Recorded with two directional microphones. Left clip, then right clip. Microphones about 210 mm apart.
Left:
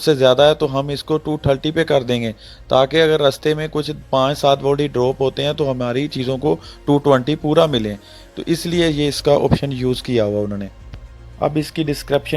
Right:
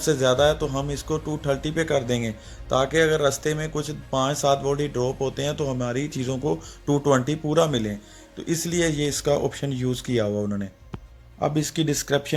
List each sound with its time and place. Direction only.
0.0 s speech: 35° left (ahead or behind)